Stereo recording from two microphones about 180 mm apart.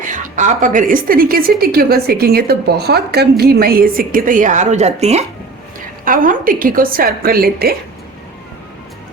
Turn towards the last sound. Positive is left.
turn(degrees=-55)  # may be behind; listen again after turning